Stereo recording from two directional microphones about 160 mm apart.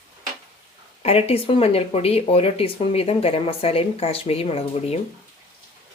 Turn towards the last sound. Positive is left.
turn(degrees=40)  # may be behind; listen again after turning